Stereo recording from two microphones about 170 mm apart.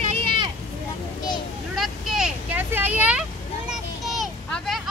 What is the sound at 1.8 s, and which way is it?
Vehicle, 5° right (ahead or behind).